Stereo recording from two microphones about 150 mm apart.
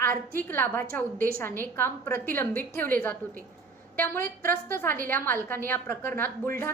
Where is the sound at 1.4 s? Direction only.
15° left (ahead or behind).